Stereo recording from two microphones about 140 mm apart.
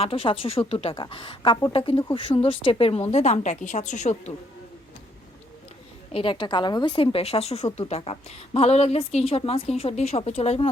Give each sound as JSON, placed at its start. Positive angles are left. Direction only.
{"t": 0.0, "sound": "a woman's voice", "side_deg": 40}
{"t": 6.1, "sound": "a woman's voice", "side_deg": 35}